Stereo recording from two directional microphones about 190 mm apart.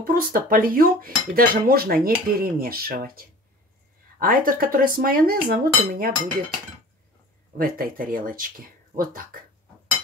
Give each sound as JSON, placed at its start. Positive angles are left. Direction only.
{"t": 0.0, "sound": "cutlery", "side_deg": -50}
{"t": 7.5, "sound": "cutlery", "side_deg": -50}